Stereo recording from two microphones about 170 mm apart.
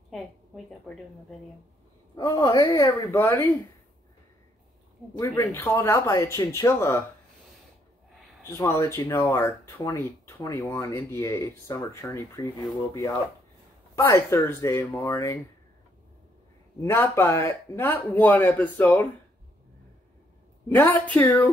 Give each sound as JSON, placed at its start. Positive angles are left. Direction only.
{"t": 2.2, "sound": "speech", "side_deg": 20}
{"t": 5.2, "sound": "speech", "side_deg": 15}
{"t": 8.5, "sound": "speech", "side_deg": 20}
{"t": 13.9, "sound": "speech", "side_deg": 15}
{"t": 16.8, "sound": "speech", "side_deg": 15}
{"t": 20.6, "sound": "speech", "side_deg": 10}